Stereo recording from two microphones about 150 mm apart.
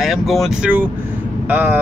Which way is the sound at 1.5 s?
10° right (ahead or behind).